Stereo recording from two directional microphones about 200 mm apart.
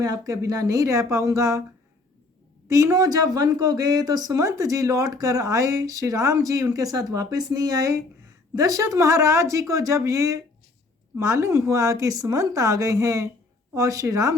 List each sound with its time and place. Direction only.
0.0 s speech: 15° right (ahead or behind)
2.6 s speech: 15° right (ahead or behind)